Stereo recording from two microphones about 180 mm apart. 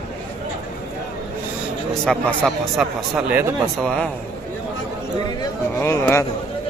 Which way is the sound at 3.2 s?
10° right (ahead or behind).